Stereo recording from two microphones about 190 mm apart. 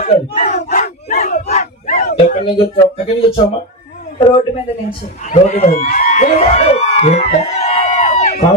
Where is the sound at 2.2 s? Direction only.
30° left (ahead or behind).